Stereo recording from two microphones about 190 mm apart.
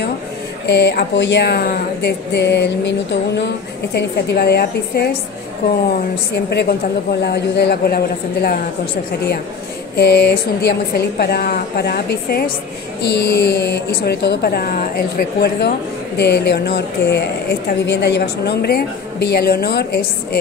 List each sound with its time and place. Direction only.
0.7 s speech: 60° left (ahead or behind)
3.9 s speech: 55° left (ahead or behind)
6.3 s speech: 60° left (ahead or behind)
9.9 s speech: 60° left (ahead or behind)